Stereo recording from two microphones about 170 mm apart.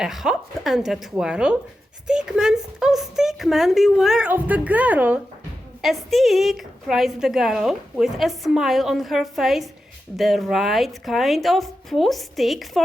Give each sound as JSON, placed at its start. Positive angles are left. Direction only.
{"t": 0.0, "sound": "a woman's voice", "side_deg": 0}